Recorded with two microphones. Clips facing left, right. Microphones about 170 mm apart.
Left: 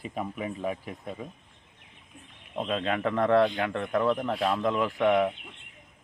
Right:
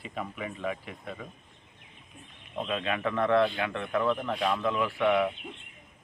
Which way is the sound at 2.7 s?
35° left (ahead or behind).